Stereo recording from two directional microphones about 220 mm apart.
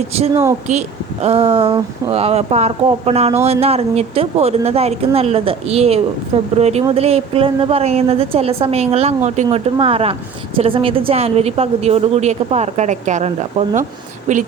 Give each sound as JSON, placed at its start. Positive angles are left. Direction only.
{"t": 0.7, "sound": "a woman's voice", "side_deg": -30}